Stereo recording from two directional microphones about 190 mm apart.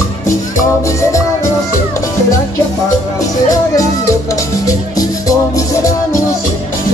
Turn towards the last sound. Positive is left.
turn(degrees=15)  # may be behind; listen again after turning